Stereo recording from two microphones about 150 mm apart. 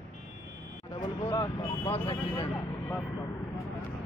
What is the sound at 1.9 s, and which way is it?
Speech, 35° left (ahead or behind).